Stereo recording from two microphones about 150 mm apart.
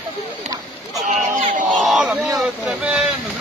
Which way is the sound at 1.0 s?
55° right (ahead or behind).